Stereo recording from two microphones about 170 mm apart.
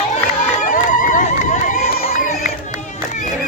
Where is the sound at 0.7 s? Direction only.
50° left (ahead or behind).